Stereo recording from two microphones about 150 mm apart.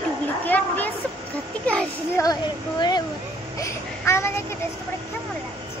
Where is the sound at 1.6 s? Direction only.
5° left (ahead or behind).